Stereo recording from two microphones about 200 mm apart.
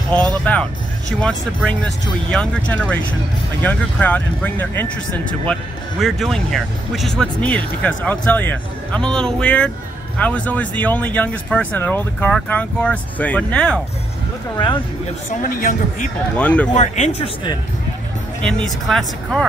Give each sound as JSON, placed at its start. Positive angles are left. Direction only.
{"t": 0.5, "sound": "speech", "side_deg": 5}
{"t": 15.4, "sound": "speech", "side_deg": 40}
{"t": 16.3, "sound": "speech", "side_deg": 5}
{"t": 16.7, "sound": "speech", "side_deg": 35}
{"t": 18.4, "sound": "speech", "side_deg": 5}